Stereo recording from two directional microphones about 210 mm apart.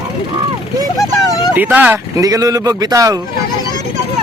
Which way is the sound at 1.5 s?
10° right (ahead or behind).